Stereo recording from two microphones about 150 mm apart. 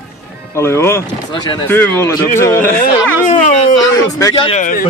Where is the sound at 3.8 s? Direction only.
25° left (ahead or behind).